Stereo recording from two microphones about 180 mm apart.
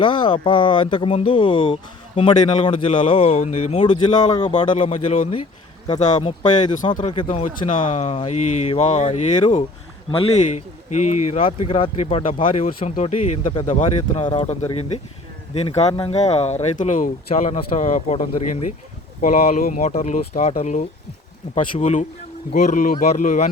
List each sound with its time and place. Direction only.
0.0 s speech: 25° left (ahead or behind)
4.9 s speech: 45° left (ahead or behind)
7.3 s speech: 45° left (ahead or behind)
10.9 s speech: 40° left (ahead or behind)
12.2 s speech: 45° left (ahead or behind)